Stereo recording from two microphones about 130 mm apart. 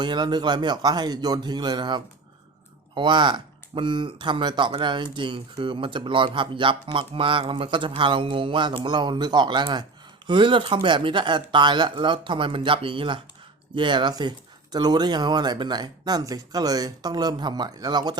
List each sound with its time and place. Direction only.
0.0 s speech: 35° right (ahead or behind)